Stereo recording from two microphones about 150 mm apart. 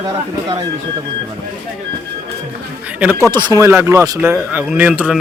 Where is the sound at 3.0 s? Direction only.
10° right (ahead or behind).